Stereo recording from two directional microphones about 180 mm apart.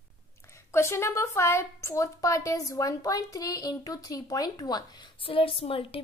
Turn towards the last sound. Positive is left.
turn(degrees=30)  # may be behind; listen again after turning